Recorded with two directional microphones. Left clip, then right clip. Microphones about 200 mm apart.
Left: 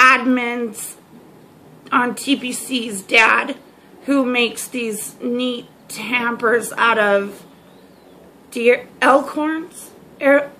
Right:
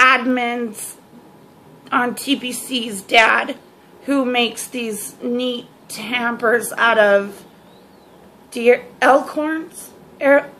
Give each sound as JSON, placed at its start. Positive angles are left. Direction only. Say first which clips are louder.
{"t": 0.0, "sound": "speech", "louder": "left 1 dB", "side_deg": 0}
{"t": 1.9, "sound": "speech", "louder": "left 1 dB", "side_deg": 0}
{"t": 8.5, "sound": "speech", "louder": "right 1 dB", "side_deg": 0}